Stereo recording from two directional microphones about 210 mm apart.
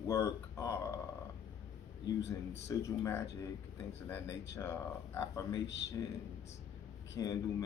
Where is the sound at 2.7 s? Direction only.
10° left (ahead or behind).